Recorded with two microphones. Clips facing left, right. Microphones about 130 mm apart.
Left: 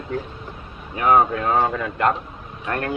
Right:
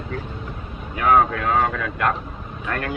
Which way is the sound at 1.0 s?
15° left (ahead or behind).